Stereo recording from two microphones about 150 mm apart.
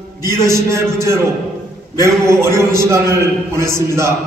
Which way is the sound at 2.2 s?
20° right (ahead or behind).